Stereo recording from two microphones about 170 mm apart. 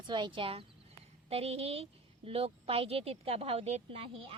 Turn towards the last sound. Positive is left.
turn(degrees=-35)  # may be behind; listen again after turning